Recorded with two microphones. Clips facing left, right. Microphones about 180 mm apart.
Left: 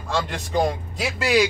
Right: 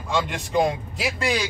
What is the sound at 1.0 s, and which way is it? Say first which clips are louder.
Speech: left 5 dB; 5° left (ahead or behind).